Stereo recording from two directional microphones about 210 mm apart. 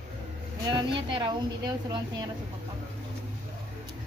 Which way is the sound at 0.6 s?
20° right (ahead or behind).